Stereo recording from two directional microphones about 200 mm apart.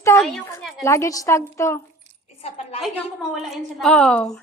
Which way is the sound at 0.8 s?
15° left (ahead or behind).